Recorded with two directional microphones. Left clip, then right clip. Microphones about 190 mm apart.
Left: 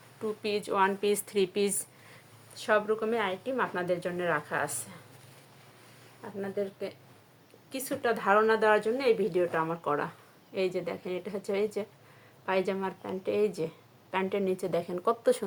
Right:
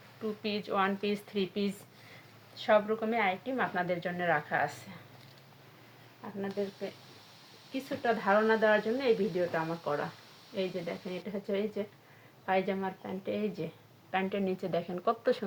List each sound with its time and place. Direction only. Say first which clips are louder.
0.4 s speech: left 4 dB; 35° left (ahead or behind)
7.7 s speech: left 1 dB; 40° left (ahead or behind)